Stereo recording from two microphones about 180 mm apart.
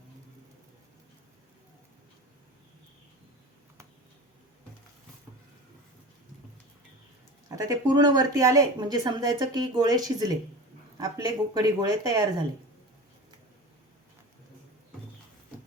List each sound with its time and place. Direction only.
7.5 s speech: 20° right (ahead or behind)